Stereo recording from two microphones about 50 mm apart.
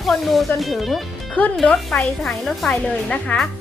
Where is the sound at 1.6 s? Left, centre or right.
Left.